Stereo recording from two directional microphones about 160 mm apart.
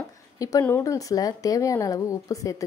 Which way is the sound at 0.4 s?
20° left (ahead or behind).